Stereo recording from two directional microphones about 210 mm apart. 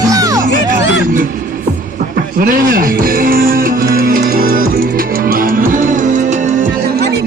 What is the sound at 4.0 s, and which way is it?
Music, 40° right (ahead or behind).